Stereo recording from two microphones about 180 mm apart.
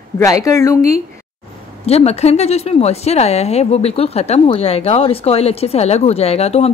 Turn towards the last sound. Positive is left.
turn(degrees=35)  # may be behind; listen again after turning